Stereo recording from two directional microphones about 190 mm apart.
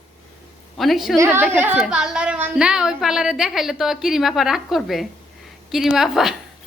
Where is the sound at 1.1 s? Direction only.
10° right (ahead or behind).